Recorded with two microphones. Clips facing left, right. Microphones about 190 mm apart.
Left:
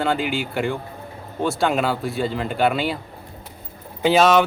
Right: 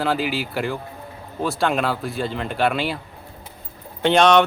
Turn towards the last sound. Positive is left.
turn(degrees=5)  # may be behind; listen again after turning